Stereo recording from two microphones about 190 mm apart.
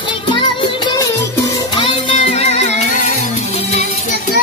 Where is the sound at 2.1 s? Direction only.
35° left (ahead or behind).